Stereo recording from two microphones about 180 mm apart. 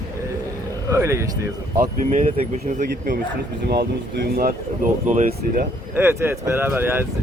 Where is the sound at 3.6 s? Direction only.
65° right (ahead or behind).